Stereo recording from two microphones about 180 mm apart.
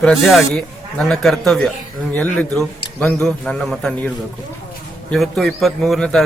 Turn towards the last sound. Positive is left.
turn(degrees=0)  # may be behind; listen again after turning